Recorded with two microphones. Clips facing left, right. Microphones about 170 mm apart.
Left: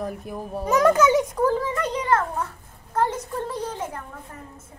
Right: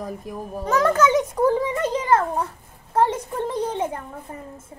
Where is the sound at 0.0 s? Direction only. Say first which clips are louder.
Left 1 dB; 5° left (ahead or behind).